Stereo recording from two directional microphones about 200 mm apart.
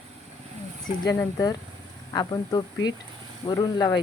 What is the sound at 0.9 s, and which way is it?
Speech, 20° left (ahead or behind).